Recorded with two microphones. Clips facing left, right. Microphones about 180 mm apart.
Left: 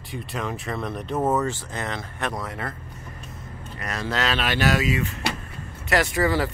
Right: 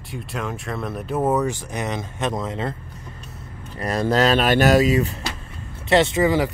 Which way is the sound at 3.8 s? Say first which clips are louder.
Right 8 dB; 35° right (ahead or behind).